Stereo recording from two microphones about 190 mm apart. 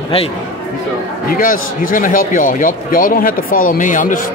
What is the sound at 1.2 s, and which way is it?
A man's voice, 50° left (ahead or behind).